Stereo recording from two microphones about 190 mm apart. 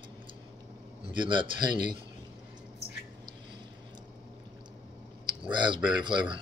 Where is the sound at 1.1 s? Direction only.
25° right (ahead or behind).